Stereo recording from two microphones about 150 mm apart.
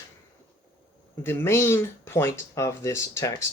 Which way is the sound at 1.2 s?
15° left (ahead or behind).